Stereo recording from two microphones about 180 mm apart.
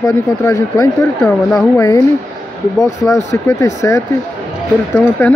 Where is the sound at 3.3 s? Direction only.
15° left (ahead or behind).